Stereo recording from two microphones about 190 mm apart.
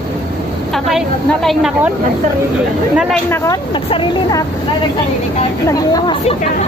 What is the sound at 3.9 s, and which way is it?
Speech, 25° left (ahead or behind).